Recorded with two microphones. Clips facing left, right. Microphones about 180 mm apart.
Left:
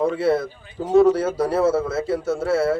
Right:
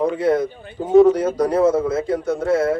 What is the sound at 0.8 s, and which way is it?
Speech, 25° right (ahead or behind).